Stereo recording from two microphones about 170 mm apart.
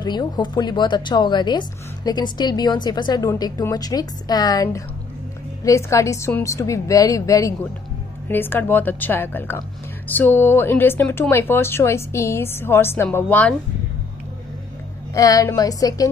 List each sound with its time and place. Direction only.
0.0 s a woman's voice: 25° left (ahead or behind); by 13.6 s 10° left (ahead or behind)
15.1 s a woman's voice: 20° left (ahead or behind)